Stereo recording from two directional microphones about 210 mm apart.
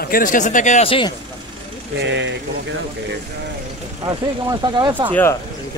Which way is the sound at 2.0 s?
60° right (ahead or behind).